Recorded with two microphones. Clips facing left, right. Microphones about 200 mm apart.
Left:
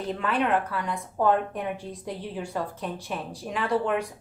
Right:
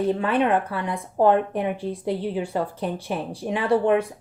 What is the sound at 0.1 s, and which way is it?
A woman's voice, 30° right (ahead or behind).